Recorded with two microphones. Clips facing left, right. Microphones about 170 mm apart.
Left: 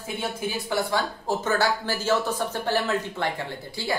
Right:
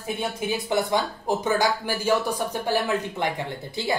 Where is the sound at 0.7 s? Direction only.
20° right (ahead or behind).